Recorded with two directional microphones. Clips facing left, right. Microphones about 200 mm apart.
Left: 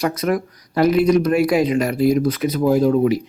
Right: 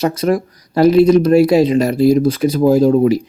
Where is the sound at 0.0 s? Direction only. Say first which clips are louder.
Right 4 dB; 30° right (ahead or behind).